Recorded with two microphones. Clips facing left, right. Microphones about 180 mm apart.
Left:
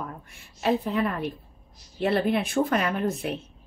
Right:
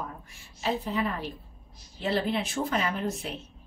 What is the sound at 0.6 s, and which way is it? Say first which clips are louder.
Speech: left 5 dB; 60° left (ahead or behind).